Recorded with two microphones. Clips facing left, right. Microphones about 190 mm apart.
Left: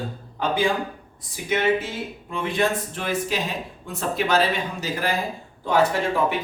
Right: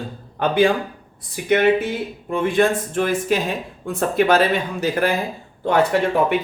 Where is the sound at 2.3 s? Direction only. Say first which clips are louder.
Right 6 dB; 50° right (ahead or behind).